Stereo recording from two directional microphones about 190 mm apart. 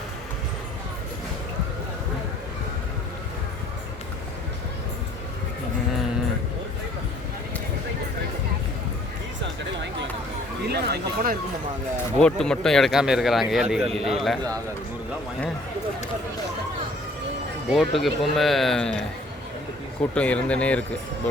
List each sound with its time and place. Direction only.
10.7 s speech: 55° right (ahead or behind)
12.2 s speech: 5° left (ahead or behind)
17.7 s speech: centre (ahead or behind)
20.1 s speech: 5° left (ahead or behind)